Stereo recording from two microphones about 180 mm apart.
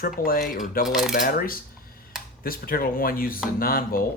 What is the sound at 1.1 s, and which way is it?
Speech, 50° left (ahead or behind).